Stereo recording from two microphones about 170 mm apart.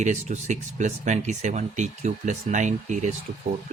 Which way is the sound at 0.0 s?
45° right (ahead or behind).